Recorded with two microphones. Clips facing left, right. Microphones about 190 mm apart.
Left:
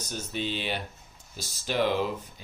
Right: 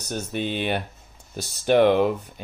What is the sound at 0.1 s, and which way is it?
Speech, 55° right (ahead or behind).